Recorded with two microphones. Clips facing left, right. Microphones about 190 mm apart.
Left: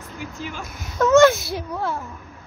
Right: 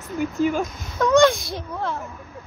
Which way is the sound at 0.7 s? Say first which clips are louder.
Left 2 dB; 5° left (ahead or behind).